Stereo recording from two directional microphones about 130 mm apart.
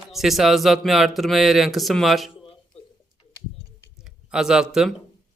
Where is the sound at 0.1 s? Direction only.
Centre (ahead or behind).